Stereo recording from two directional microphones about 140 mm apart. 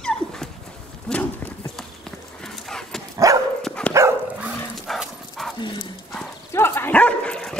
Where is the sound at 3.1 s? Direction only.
25° right (ahead or behind).